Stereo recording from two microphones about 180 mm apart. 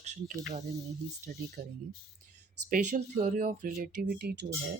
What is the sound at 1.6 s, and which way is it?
Speech, 50° right (ahead or behind).